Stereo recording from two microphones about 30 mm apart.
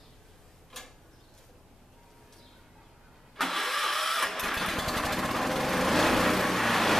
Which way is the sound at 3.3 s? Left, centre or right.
Centre.